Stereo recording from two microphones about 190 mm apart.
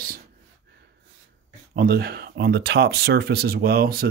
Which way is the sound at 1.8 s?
55° right (ahead or behind).